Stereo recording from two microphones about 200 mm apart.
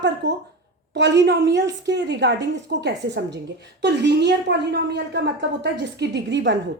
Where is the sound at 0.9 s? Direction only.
60° right (ahead or behind).